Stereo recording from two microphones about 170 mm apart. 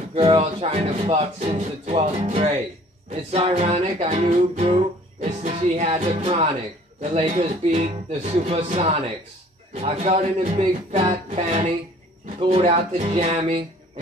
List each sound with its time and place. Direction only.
0.1 s music: 35° right (ahead or behind)